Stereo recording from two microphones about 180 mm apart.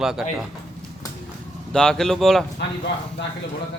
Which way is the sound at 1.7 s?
5° left (ahead or behind).